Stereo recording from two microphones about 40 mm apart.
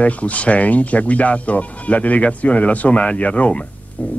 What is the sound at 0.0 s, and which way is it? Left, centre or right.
Speech, left.